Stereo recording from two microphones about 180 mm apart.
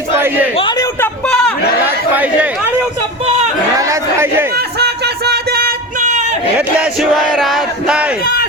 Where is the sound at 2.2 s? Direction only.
10° right (ahead or behind).